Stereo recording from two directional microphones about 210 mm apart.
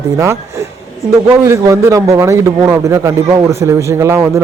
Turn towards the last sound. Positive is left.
turn(degrees=-15)  # may be behind; listen again after turning